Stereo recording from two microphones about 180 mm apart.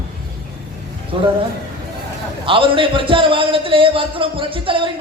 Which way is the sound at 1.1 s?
30° right (ahead or behind).